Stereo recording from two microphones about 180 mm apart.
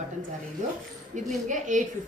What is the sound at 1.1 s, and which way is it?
Speech, 45° right (ahead or behind).